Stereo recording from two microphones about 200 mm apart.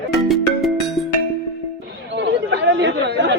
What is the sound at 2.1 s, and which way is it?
Chatter, 55° right (ahead or behind).